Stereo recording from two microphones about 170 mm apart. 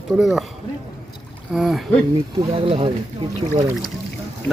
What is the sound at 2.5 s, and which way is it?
Speech, 35° right (ahead or behind).